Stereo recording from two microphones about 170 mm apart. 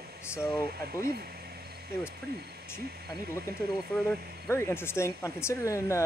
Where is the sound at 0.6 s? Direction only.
65° right (ahead or behind).